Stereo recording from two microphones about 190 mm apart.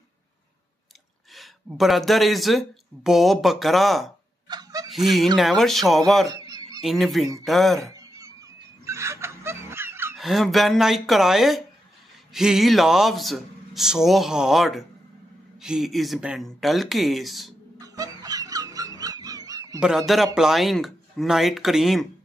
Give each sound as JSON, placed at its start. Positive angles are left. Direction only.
{"t": 1.3, "sound": "speech", "side_deg": 0}
{"t": 4.5, "sound": "snicker", "side_deg": -20}
{"t": 4.8, "sound": "speech", "side_deg": 0}
{"t": 6.2, "sound": "a sound", "side_deg": -20}
{"t": 6.8, "sound": "speech", "side_deg": 0}
{"t": 7.9, "sound": "a sound", "side_deg": -20}
{"t": 10.1, "sound": "speech", "side_deg": 0}
{"t": 17.7, "sound": "chicken", "side_deg": -20}
{"t": 18.2, "sound": "a sound", "side_deg": -20}
{"t": 19.8, "sound": "speech", "side_deg": 0}